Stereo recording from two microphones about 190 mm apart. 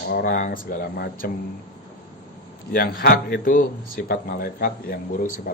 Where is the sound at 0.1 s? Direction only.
50° left (ahead or behind).